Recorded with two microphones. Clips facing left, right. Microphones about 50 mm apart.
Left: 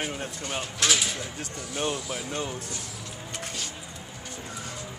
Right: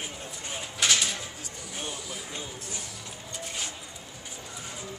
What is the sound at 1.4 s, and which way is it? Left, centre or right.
Speech, left.